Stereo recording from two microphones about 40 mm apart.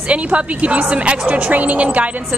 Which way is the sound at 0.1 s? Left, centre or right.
Right.